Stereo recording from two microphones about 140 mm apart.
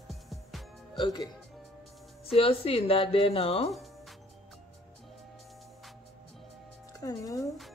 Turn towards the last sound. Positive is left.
turn(degrees=25)  # may be behind; listen again after turning